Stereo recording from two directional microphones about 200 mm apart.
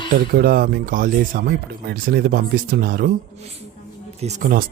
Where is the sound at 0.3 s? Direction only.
50° right (ahead or behind).